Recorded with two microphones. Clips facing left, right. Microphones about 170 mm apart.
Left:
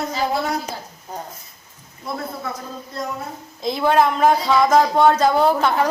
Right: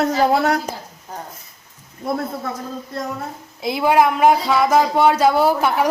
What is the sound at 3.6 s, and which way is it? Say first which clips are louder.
Speech: right 1 dB; 10° right (ahead or behind).